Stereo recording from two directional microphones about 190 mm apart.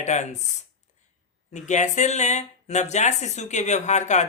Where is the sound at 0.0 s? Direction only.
40° left (ahead or behind).